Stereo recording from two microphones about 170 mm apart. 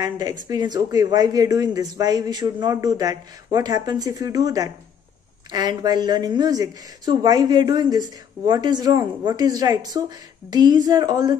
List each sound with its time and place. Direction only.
0.0 s speech: 25° right (ahead or behind)